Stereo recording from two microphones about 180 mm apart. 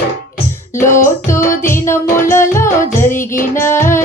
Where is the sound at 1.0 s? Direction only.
15° left (ahead or behind).